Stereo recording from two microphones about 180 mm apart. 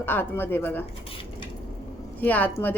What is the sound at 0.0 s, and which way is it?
Speech, 10° left (ahead or behind).